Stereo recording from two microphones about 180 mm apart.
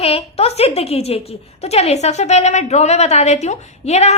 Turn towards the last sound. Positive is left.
turn(degrees=35)  # may be behind; listen again after turning